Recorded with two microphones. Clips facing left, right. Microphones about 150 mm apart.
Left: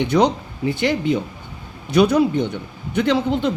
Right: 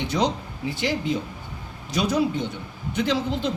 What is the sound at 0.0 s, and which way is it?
Speech, 60° left (ahead or behind).